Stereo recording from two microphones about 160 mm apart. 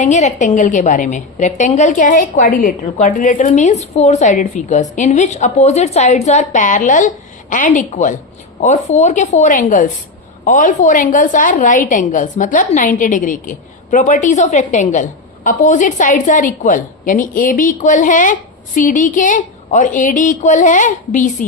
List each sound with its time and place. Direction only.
0.0 s a woman's voice: 50° left (ahead or behind)